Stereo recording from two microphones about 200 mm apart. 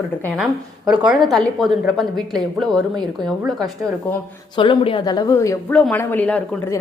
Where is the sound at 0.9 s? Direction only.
5° right (ahead or behind).